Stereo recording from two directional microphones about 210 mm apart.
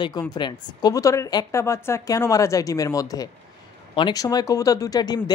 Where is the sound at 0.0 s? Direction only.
20° left (ahead or behind).